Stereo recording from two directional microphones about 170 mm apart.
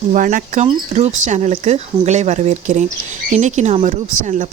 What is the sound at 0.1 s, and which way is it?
Speech, 50° right (ahead or behind).